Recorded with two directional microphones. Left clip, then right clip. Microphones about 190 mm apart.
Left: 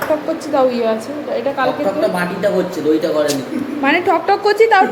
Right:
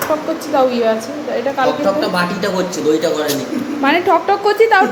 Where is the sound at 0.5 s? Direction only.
5° right (ahead or behind).